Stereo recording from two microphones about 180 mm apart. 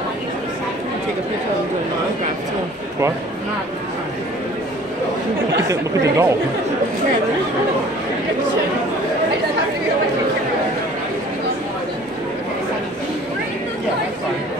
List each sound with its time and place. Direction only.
5.7 s speech: 15° right (ahead or behind)